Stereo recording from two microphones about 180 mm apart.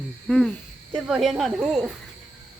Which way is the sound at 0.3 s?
Centre (ahead or behind).